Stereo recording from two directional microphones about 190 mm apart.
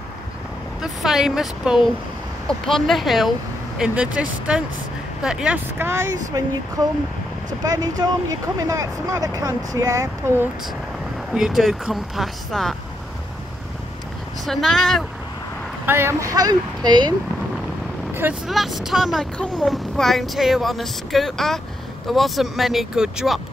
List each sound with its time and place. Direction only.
0.8 s speech: 5° right (ahead or behind)
11.3 s speech: centre (ahead or behind)
14.4 s speech: centre (ahead or behind)
15.8 s speech: 10° right (ahead or behind)
18.5 s speech: centre (ahead or behind)